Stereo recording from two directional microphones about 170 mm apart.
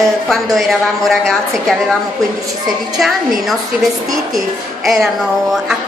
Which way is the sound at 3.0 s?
Centre (ahead or behind).